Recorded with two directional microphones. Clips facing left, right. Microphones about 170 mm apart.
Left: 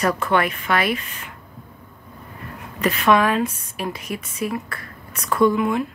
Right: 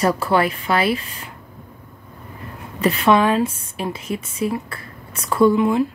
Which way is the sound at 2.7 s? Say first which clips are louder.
Right 2 dB; 30° right (ahead or behind).